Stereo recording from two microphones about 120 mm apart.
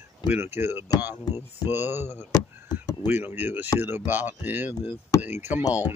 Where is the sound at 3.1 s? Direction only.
15° right (ahead or behind).